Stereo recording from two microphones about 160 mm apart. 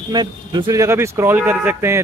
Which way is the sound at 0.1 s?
25° right (ahead or behind).